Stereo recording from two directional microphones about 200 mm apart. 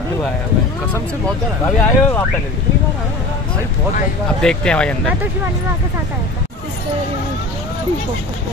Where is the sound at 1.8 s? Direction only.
10° left (ahead or behind).